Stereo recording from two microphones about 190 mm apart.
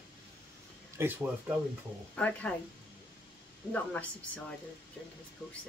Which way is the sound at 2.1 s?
5° left (ahead or behind).